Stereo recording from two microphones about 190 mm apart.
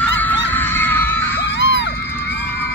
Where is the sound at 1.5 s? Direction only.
70° left (ahead or behind).